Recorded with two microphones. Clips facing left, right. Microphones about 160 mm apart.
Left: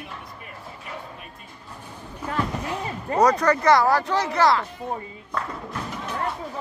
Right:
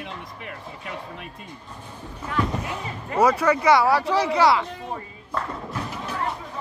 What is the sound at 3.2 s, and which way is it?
Speech, 5° right (ahead or behind).